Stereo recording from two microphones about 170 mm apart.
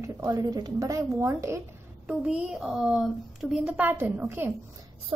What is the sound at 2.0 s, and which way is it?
A woman's voice, 5° right (ahead or behind).